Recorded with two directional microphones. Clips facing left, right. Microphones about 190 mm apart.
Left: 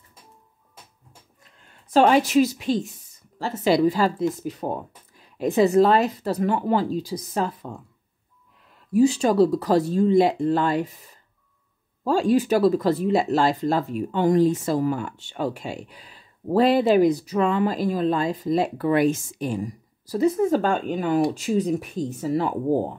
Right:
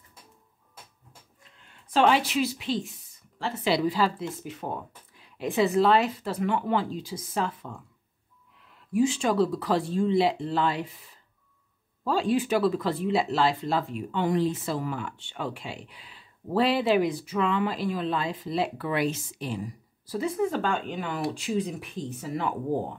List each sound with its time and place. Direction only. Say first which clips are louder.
1.9 s speech: left 5 dB; 45° left (ahead or behind)
8.9 s speech: left 6 dB; 40° left (ahead or behind)
12.0 s speech: left 5 dB; 45° left (ahead or behind)